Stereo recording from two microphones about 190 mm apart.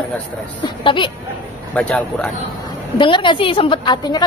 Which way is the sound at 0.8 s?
25° left (ahead or behind).